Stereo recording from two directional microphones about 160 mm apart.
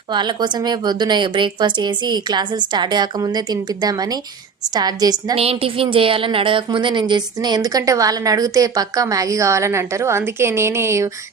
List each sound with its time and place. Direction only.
0.1 s a woman's voice: 30° right (ahead or behind)
5.3 s a woman's voice: 35° right (ahead or behind); by 11.1 s 15° right (ahead or behind)